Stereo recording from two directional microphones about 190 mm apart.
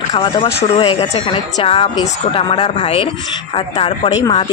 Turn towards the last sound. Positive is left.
turn(degrees=20)  # may be behind; listen again after turning